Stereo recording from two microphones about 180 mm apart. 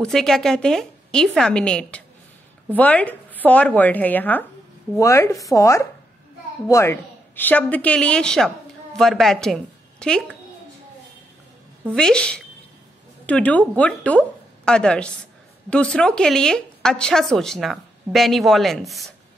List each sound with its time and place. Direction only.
0.0 s a woman's voice: centre (ahead or behind)
11.9 s a woman's voice: 5° left (ahead or behind)